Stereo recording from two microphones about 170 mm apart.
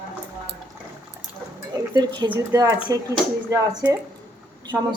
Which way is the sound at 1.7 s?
25° right (ahead or behind).